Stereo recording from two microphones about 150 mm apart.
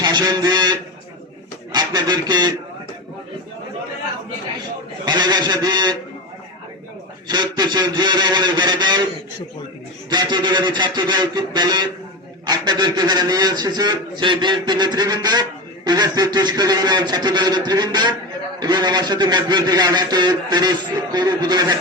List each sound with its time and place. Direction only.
0.0 s a man's voice: 30° right (ahead or behind)
5.0 s a man's voice: 30° right (ahead or behind)
7.3 s a man's voice: 30° right (ahead or behind)
10.1 s a man's voice: 30° right (ahead or behind)